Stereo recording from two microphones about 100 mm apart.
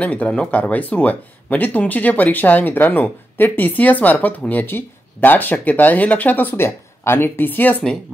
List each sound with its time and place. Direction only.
0.0 s speech: 15° left (ahead or behind)